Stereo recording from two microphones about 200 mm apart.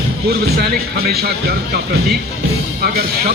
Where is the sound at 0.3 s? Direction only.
55° right (ahead or behind).